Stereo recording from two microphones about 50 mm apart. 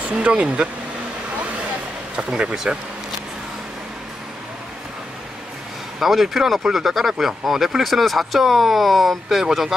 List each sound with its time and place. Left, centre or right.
0.1 s speech: right
2.1 s speech: centre
5.9 s speech: centre